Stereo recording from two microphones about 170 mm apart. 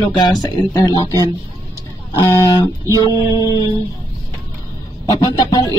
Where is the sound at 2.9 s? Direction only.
30° left (ahead or behind).